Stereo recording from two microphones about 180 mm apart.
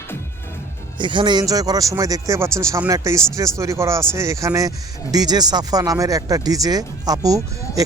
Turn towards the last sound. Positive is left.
turn(degrees=-20)  # may be behind; listen again after turning